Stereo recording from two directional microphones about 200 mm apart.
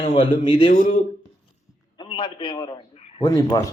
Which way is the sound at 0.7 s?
40° left (ahead or behind).